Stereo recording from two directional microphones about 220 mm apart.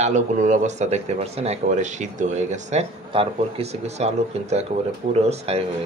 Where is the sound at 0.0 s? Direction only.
35° right (ahead or behind).